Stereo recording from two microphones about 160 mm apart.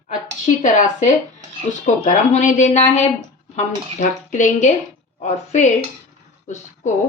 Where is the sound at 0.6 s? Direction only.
50° left (ahead or behind).